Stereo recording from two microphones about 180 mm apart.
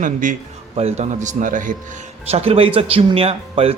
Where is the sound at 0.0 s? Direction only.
45° right (ahead or behind).